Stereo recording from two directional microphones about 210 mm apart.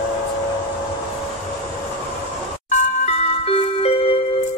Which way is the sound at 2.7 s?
30° left (ahead or behind).